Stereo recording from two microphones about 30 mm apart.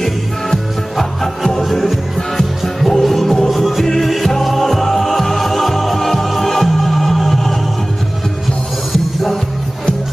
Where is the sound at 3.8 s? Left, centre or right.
Centre.